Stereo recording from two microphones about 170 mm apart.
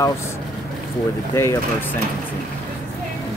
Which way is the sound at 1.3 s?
15° left (ahead or behind).